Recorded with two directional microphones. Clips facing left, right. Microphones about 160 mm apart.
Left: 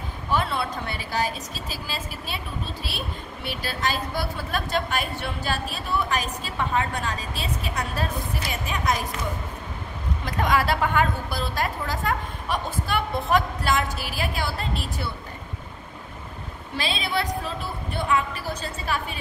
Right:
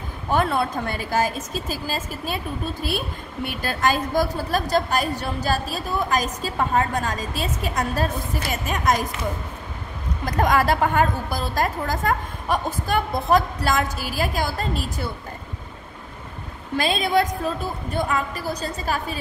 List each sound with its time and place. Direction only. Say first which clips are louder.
0.3 s a woman's voice: right 4 dB; 50° right (ahead or behind)
10.2 s a woman's voice: right 4 dB; 45° right (ahead or behind)
16.7 s a woman's voice: right 7 dB; 45° right (ahead or behind)